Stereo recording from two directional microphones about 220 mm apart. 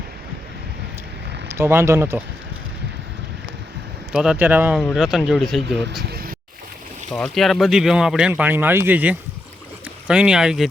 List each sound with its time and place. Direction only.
1.5 s speech: 10° right (ahead or behind)
4.1 s speech: 5° right (ahead or behind)
6.0 s vehicle: 45° right (ahead or behind)
7.1 s speech: centre (ahead or behind)